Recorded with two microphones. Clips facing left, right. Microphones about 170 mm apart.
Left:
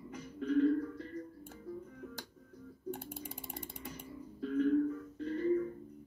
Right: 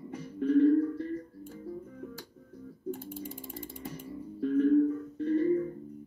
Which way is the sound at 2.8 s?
65° left (ahead or behind).